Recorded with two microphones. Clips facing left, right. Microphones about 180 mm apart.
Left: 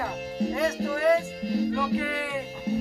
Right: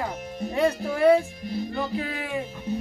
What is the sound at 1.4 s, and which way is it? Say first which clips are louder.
Music: left 3 dB; 90° left.